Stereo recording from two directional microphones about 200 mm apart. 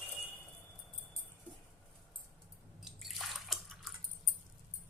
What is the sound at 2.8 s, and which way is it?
Drip, centre (ahead or behind).